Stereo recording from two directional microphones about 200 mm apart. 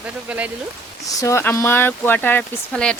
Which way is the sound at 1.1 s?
15° left (ahead or behind).